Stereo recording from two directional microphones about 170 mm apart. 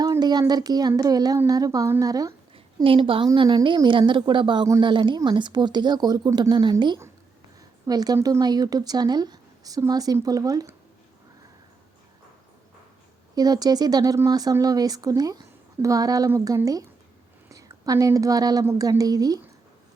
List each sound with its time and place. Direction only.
0.0 s a woman's voice: 25° right (ahead or behind)
13.3 s a woman's voice: 20° right (ahead or behind)